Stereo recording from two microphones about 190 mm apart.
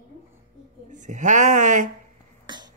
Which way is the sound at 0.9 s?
40° right (ahead or behind).